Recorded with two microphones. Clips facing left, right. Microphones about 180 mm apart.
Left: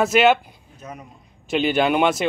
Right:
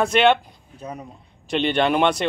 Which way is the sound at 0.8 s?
35° right (ahead or behind).